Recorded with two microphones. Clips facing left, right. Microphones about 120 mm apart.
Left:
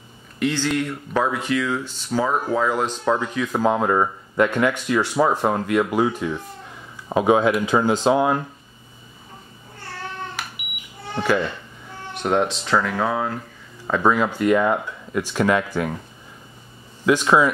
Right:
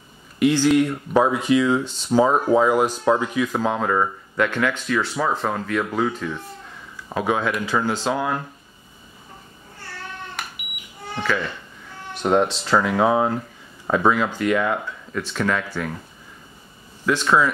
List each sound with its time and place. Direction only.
0.4 s speech: 10° right (ahead or behind); by 8.4 s 20° left (ahead or behind)
10.4 s smoke detector: centre (ahead or behind)
11.1 s speech: 25° left (ahead or behind)
12.2 s speech: centre (ahead or behind)
12.9 s speech: 20° right (ahead or behind)
13.8 s speech: 5° right (ahead or behind)
14.1 s speech: 5° left (ahead or behind)
17.0 s speech: 15° left (ahead or behind)